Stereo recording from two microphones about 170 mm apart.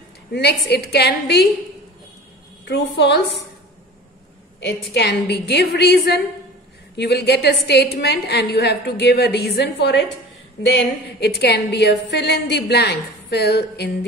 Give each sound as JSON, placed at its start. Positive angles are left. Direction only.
{"t": 0.3, "sound": "a woman's voice", "side_deg": 75}
{"t": 2.7, "sound": "a woman's voice", "side_deg": 90}
{"t": 4.9, "sound": "a woman's voice", "side_deg": 80}
{"t": 11.1, "sound": "a woman's voice", "side_deg": 75}